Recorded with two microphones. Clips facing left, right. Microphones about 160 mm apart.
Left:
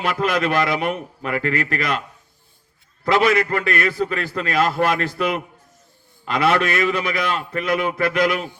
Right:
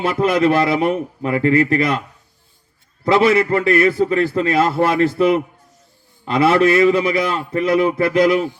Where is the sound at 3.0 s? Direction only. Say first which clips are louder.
Right 4 dB; 30° right (ahead or behind).